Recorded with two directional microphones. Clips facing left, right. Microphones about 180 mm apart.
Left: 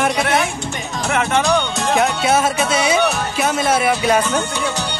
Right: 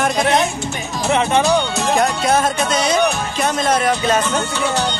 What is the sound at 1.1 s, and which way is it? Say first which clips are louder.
Speech: right 3 dB; 20° right (ahead or behind).